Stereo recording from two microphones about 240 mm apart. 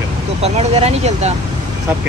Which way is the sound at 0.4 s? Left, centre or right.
Right.